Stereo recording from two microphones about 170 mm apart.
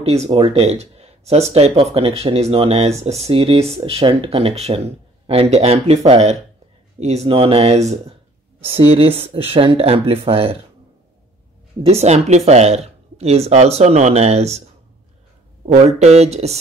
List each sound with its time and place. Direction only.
0.0 s speech: 35° right (ahead or behind)
11.8 s speech: 40° right (ahead or behind)
16.0 s speech: 40° right (ahead or behind)